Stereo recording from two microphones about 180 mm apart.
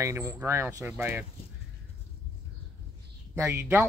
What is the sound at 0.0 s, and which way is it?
Speech, 15° right (ahead or behind).